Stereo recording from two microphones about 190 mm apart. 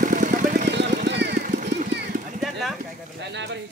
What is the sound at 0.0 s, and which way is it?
Vehicle, 45° right (ahead or behind).